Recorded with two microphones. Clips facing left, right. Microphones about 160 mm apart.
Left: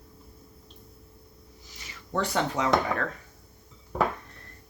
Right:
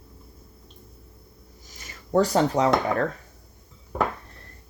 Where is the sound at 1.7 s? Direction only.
45° right (ahead or behind).